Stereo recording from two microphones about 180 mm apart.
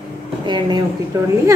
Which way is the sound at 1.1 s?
20° right (ahead or behind).